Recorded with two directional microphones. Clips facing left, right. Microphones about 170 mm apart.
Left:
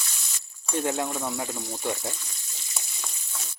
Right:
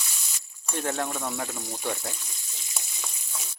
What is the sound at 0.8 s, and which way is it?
Speech, 10° left (ahead or behind).